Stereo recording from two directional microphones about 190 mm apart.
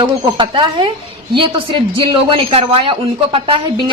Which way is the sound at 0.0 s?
25° right (ahead or behind).